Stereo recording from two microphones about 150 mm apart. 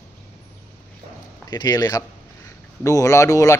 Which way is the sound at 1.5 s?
25° left (ahead or behind).